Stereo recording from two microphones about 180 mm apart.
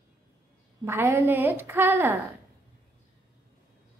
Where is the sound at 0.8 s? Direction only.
15° right (ahead or behind).